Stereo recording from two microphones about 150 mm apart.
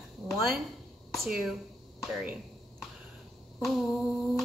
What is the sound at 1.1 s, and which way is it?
Speech, centre (ahead or behind).